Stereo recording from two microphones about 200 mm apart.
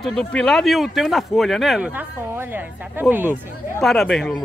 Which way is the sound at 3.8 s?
Centre (ahead or behind).